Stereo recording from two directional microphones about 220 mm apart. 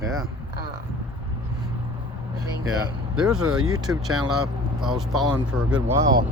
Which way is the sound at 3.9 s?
Centre (ahead or behind).